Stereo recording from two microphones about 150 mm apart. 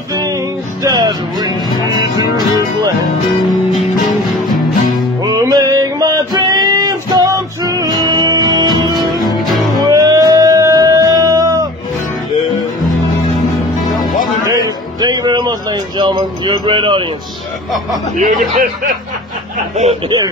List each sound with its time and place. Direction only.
0.8 s music: 25° right (ahead or behind)
5.2 s music: 25° right (ahead or behind)
14.4 s music: 25° right (ahead or behind)
18.1 s speech: 70° right (ahead or behind)